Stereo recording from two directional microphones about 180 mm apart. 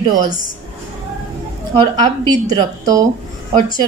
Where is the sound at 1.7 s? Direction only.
20° right (ahead or behind).